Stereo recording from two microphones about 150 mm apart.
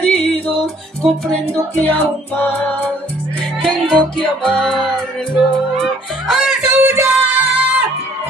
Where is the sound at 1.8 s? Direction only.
15° left (ahead or behind).